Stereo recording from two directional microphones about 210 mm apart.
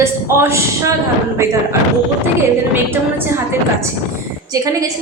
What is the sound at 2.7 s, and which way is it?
Speech, 10° right (ahead or behind).